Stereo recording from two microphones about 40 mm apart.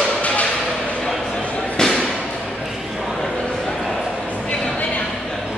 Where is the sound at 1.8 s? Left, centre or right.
Centre.